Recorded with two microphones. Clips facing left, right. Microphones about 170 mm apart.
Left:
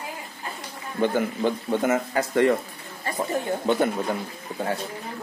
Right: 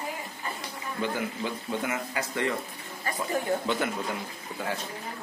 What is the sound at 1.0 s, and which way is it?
Speech, 55° left (ahead or behind).